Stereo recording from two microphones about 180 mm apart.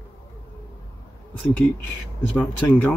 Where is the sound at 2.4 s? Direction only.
10° left (ahead or behind).